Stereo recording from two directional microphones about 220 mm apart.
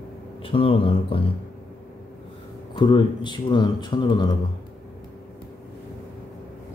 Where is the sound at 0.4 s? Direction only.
25° left (ahead or behind).